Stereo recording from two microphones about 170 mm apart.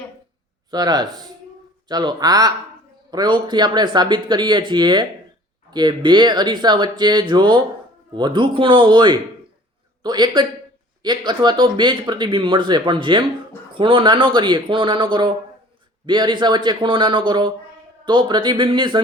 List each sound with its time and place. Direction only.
0.7 s speech: 25° right (ahead or behind)